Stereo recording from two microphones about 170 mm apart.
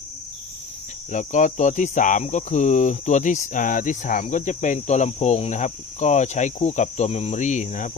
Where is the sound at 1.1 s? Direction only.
45° left (ahead or behind).